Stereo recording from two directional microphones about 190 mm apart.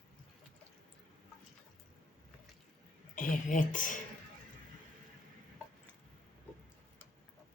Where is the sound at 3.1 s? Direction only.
45° left (ahead or behind).